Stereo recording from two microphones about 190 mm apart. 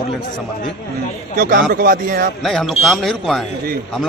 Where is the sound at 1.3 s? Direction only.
50° right (ahead or behind).